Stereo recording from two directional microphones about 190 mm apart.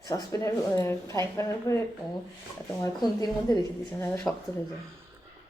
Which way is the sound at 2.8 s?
20° left (ahead or behind).